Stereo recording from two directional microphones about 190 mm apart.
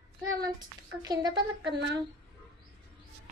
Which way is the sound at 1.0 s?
20° right (ahead or behind).